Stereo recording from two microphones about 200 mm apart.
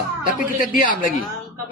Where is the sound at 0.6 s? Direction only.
40° left (ahead or behind).